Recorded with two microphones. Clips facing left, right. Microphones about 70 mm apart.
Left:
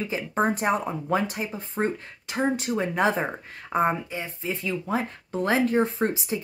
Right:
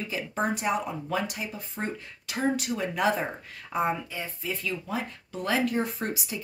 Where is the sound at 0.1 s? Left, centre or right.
Left.